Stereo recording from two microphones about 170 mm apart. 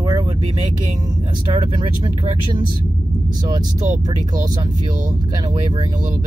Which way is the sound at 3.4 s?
25° right (ahead or behind).